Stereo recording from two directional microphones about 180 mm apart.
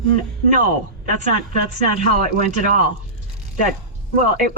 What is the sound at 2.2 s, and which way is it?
Speech, 50° right (ahead or behind).